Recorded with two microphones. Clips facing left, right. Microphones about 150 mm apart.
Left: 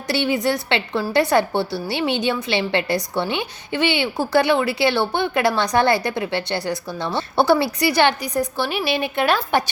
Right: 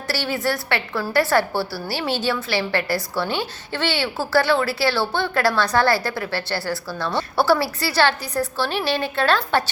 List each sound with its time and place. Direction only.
0.1 s a woman's voice: 20° left (ahead or behind)